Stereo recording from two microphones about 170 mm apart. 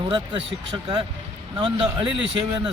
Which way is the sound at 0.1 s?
30° right (ahead or behind).